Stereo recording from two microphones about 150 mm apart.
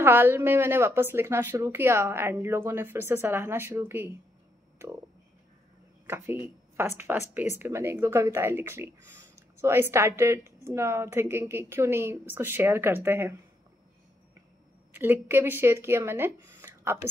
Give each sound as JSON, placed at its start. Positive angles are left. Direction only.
{"t": 0.0, "sound": "speech", "side_deg": -15}
{"t": 6.0, "sound": "speech", "side_deg": -15}
{"t": 14.9, "sound": "speech", "side_deg": -15}